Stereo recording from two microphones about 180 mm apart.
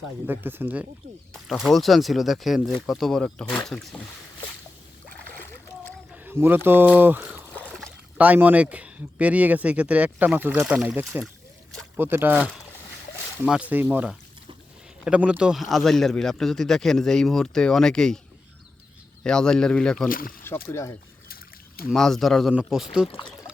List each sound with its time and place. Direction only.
0.3 s speech: 10° right (ahead or behind)
1.3 s speech: centre (ahead or behind)
6.2 s speech: 10° right (ahead or behind)
7.5 s a sound: 5° left (ahead or behind)
7.9 s speech: 10° right (ahead or behind)
19.2 s speech: 5° left (ahead or behind)
20.1 s speech: 50° left (ahead or behind)
20.7 s speech: 15° left (ahead or behind)
21.8 s speech: centre (ahead or behind)